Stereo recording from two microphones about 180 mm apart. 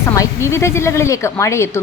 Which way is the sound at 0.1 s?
15° left (ahead or behind).